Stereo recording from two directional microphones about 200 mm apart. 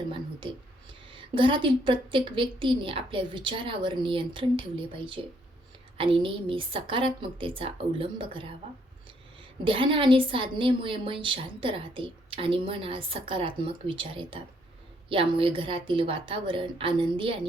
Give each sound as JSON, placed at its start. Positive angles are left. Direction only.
{"t": 0.1, "sound": "a sound", "side_deg": -25}
{"t": 1.4, "sound": "a woman's voice", "side_deg": -25}
{"t": 9.6, "sound": "a woman's voice", "side_deg": -25}